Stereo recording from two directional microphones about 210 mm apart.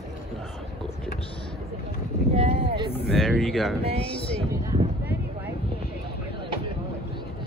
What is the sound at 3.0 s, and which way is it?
Speech, centre (ahead or behind).